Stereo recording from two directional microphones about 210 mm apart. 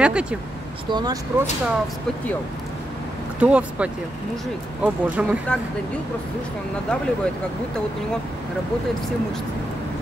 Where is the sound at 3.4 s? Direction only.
5° right (ahead or behind).